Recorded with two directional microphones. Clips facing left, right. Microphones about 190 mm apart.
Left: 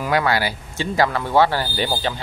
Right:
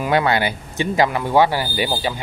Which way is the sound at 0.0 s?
20° right (ahead or behind).